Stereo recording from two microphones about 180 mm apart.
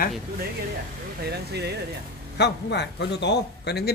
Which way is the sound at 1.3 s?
65° right (ahead or behind).